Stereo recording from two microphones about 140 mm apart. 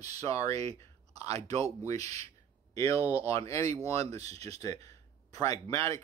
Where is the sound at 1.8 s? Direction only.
25° left (ahead or behind).